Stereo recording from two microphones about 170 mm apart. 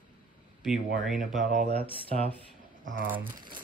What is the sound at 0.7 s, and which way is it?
Speech, 5° right (ahead or behind).